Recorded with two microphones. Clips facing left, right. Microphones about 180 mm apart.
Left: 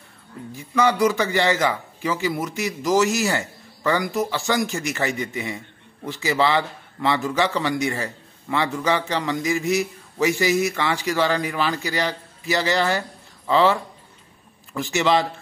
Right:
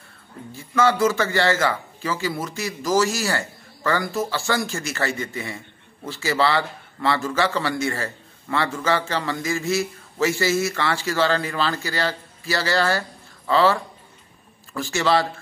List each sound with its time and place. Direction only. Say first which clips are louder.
0.6 s a man's voice: even; 15° left (ahead or behind)